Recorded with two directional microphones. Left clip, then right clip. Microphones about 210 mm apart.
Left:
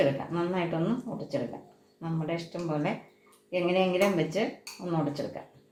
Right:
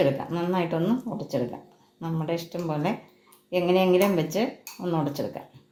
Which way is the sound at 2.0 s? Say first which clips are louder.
Right 4 dB; 40° right (ahead or behind).